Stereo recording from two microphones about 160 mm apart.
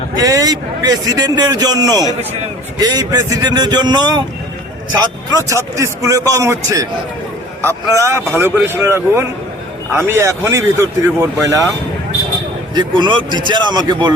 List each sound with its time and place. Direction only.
0.2 s a man's voice: 20° right (ahead or behind)
5.5 s a man's voice: 20° right (ahead or behind)
7.9 s speech: 15° right (ahead or behind)
12.7 s a man's voice: 30° right (ahead or behind)